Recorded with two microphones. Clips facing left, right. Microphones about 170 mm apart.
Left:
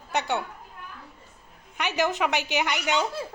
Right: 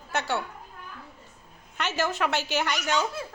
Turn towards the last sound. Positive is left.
turn(degrees=15)  # may be behind; listen again after turning